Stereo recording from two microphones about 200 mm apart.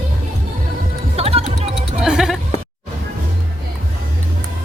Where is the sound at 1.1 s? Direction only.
30° right (ahead or behind).